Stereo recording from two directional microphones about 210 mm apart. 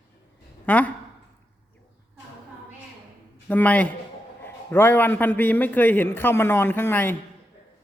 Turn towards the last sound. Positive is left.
turn(degrees=10)  # may be behind; listen again after turning